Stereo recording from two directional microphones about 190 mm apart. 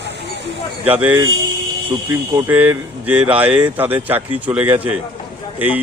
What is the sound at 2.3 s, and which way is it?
A man's voice, 10° right (ahead or behind).